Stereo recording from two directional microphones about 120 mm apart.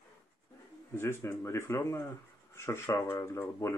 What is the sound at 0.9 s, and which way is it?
Speech, 20° left (ahead or behind).